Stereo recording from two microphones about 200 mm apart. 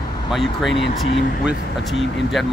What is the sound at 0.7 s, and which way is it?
Speech, 65° left (ahead or behind).